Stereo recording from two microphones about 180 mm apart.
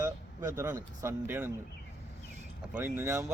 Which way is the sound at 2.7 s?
10° right (ahead or behind).